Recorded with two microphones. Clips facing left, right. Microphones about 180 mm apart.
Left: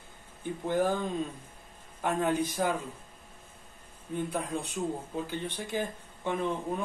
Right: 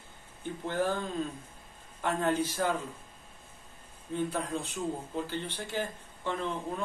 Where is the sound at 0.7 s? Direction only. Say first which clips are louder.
Left 3 dB; 15° left (ahead or behind).